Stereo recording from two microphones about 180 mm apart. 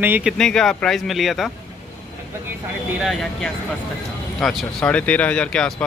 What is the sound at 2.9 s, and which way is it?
Speech, centre (ahead or behind).